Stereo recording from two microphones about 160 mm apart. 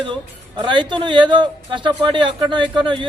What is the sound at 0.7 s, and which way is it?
Speech, 30° right (ahead or behind).